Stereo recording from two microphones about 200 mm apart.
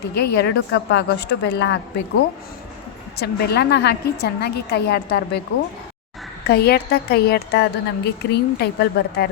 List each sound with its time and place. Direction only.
0.1 s a woman's voice: 55° left (ahead or behind)
3.2 s a woman's voice: 55° left (ahead or behind)
6.5 s a woman's voice: 50° left (ahead or behind)